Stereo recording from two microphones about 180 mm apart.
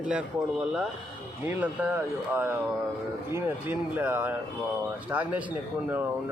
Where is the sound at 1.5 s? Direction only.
10° right (ahead or behind).